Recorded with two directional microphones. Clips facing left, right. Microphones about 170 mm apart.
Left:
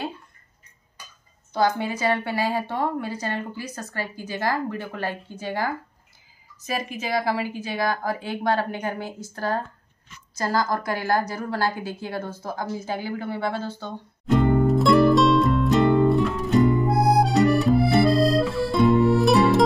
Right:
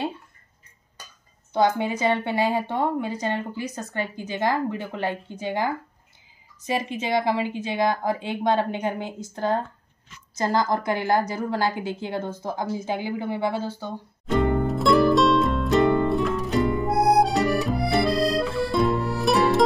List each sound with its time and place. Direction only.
1.5 s a woman's voice: 20° right (ahead or behind)
14.3 s music: centre (ahead or behind)